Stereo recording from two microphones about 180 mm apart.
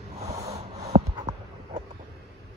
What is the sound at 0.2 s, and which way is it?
Snort, 35° right (ahead or behind).